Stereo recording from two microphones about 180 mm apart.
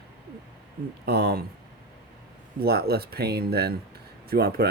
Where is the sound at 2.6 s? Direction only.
60° right (ahead or behind).